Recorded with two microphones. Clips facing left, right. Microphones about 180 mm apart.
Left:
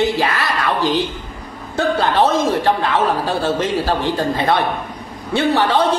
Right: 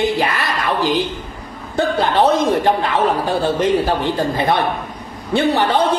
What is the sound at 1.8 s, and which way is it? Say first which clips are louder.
A man's voice: even; 20° right (ahead or behind).